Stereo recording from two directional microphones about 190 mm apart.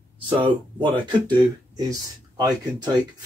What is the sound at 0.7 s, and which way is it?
Speech, 25° right (ahead or behind).